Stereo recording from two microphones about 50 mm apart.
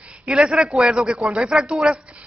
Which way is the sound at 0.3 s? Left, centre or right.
Centre.